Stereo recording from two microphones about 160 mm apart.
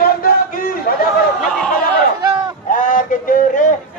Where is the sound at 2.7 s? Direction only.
55° left (ahead or behind).